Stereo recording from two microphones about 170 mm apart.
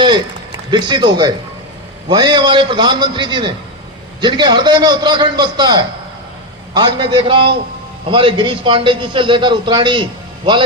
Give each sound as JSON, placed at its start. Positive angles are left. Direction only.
{"t": 0.7, "sound": "a man's voice", "side_deg": -25}